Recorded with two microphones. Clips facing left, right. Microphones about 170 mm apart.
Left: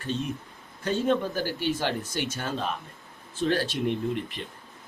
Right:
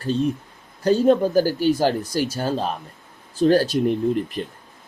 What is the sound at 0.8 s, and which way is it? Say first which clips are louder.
Speech: right 9 dB; 35° right (ahead or behind).